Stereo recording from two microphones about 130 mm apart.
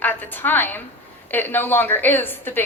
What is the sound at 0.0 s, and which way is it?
A woman's voice, 15° left (ahead or behind).